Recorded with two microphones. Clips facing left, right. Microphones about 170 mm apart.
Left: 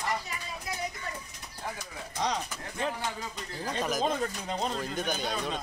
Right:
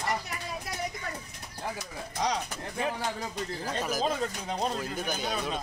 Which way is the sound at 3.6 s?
5° right (ahead or behind).